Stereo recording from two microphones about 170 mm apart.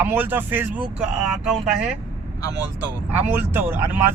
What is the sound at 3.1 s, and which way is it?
Speech, 15° right (ahead or behind).